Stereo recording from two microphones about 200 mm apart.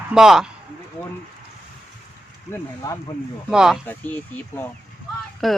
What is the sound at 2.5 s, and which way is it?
Speech, 15° left (ahead or behind).